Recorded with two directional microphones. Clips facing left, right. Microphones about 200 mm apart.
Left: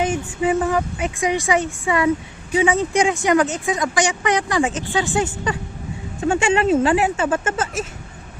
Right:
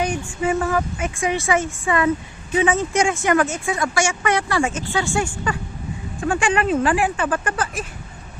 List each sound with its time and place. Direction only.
0.0 s speech: 20° left (ahead or behind)